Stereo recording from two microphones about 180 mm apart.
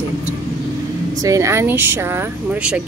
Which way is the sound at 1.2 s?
15° right (ahead or behind).